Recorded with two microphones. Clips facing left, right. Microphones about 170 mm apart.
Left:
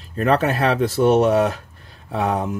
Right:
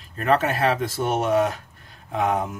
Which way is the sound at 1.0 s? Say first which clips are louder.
Left 6 dB; 35° left (ahead or behind).